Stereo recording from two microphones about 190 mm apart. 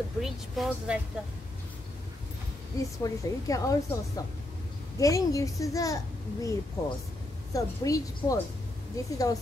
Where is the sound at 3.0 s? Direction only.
20° left (ahead or behind).